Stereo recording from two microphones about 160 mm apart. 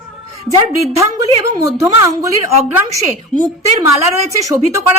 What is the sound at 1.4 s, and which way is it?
Speech, 20° right (ahead or behind).